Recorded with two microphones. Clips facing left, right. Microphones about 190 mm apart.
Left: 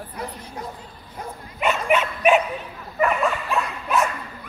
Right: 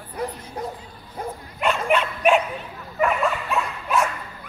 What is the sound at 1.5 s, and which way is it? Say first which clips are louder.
Dog: left 1 dB; 5° left (ahead or behind).